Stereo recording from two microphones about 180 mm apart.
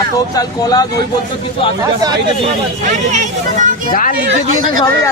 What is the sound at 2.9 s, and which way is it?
Speech, 45° right (ahead or behind).